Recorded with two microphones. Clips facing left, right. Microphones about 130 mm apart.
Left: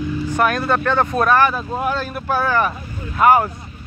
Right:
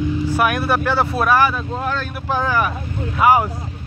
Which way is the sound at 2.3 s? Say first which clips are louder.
Left 1 dB; 15° right (ahead or behind).